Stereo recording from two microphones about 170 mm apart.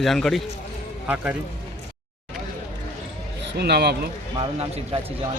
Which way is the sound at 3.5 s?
70° right (ahead or behind).